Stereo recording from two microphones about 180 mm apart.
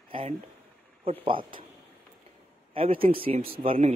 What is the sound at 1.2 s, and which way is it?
Speech, 30° right (ahead or behind).